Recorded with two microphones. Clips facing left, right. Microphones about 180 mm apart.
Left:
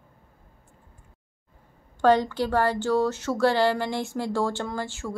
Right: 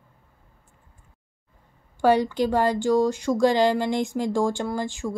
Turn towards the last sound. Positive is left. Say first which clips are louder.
# right 4 dB
turn(degrees=-15)  # may be behind; listen again after turning